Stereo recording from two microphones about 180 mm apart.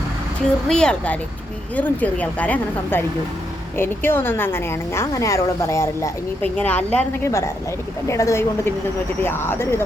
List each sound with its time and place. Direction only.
0.7 s a woman's voice: 5° left (ahead or behind)